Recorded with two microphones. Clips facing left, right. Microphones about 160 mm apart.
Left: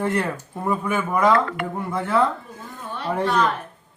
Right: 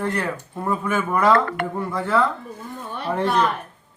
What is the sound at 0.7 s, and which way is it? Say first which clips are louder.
Speech: even; 10° left (ahead or behind).